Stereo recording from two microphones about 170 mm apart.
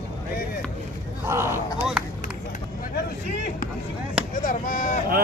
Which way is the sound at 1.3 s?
15° right (ahead or behind).